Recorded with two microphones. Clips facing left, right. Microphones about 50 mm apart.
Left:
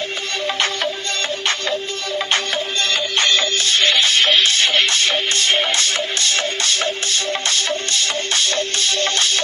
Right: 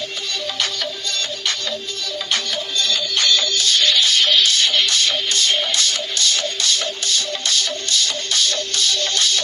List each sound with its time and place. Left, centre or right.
0.4 s music: left